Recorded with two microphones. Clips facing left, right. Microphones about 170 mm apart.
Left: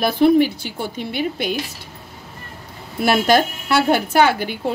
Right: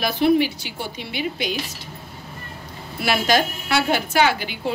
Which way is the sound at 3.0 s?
50° left (ahead or behind).